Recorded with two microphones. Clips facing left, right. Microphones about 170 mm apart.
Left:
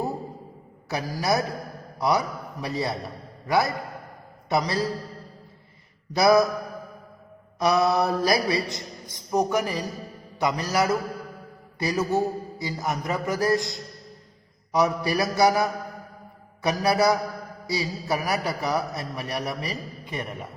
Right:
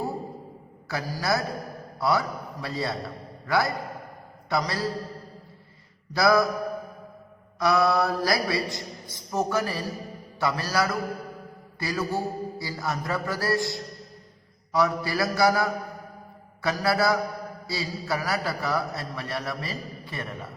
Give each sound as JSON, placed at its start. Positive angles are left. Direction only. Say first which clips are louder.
{"t": 0.9, "sound": "a man's voice", "louder": "left 2 dB", "side_deg": 20}
{"t": 6.1, "sound": "a man's voice", "louder": "left 3 dB", "side_deg": 20}
{"t": 7.6, "sound": "a man's voice", "louder": "left 1 dB", "side_deg": 20}